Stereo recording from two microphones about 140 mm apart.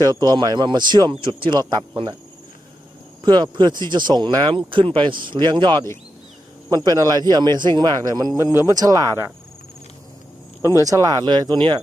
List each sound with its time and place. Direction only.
0.0 s speech: 25° right (ahead or behind)
3.2 s speech: 30° right (ahead or behind)
10.6 s speech: 20° right (ahead or behind)